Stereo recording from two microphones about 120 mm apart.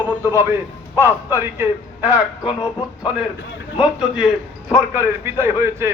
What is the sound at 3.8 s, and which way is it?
Speech, 5° right (ahead or behind).